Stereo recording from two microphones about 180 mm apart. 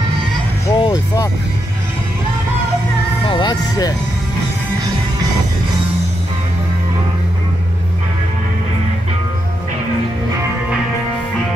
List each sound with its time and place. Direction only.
0.7 s music: 20° left (ahead or behind)
3.3 s music: 25° left (ahead or behind)